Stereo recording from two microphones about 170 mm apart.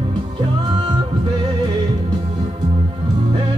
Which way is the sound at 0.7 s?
25° right (ahead or behind).